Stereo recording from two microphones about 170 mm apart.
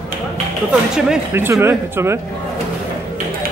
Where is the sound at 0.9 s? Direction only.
5° right (ahead or behind).